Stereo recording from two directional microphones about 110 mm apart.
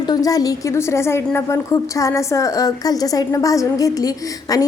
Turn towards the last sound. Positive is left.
turn(degrees=35)  # may be behind; listen again after turning